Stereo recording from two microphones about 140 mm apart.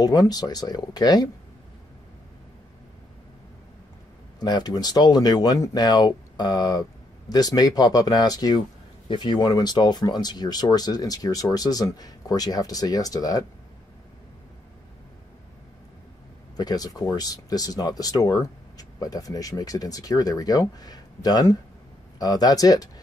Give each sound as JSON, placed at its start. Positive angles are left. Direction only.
{"t": 0.0, "sound": "speech", "side_deg": 30}
{"t": 4.4, "sound": "speech", "side_deg": 30}
{"t": 16.5, "sound": "speech", "side_deg": 30}